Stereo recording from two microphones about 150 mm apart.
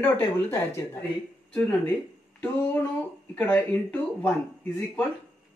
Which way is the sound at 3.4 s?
10° left (ahead or behind).